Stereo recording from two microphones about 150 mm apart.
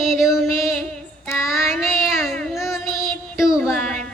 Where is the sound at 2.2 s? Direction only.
Centre (ahead or behind).